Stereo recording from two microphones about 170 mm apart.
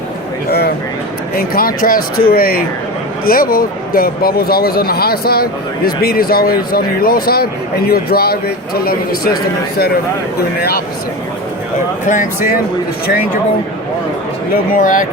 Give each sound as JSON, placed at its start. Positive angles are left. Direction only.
{"t": 1.4, "sound": "speech", "side_deg": 60}
{"t": 10.6, "sound": "speech", "side_deg": 65}
{"t": 12.0, "sound": "speech", "side_deg": 50}
{"t": 14.5, "sound": "speech", "side_deg": 55}